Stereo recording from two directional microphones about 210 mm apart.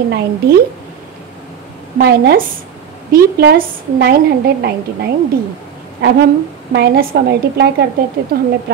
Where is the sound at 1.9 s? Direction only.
45° right (ahead or behind).